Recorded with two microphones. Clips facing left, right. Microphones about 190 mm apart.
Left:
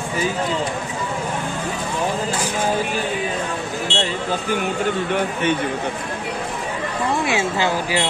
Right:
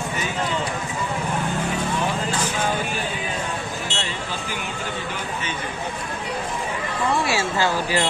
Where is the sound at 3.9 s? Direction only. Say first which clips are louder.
Left 7 dB; 40° right (ahead or behind).